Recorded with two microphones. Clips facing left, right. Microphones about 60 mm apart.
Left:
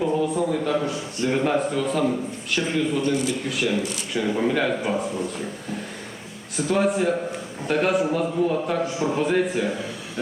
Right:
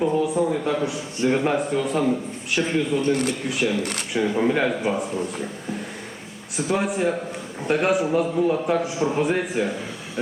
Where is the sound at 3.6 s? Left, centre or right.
Centre.